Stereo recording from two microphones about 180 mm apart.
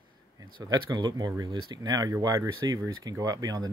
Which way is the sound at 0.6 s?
20° right (ahead or behind).